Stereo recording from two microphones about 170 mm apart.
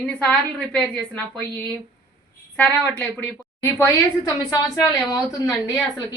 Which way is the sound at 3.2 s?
10° left (ahead or behind).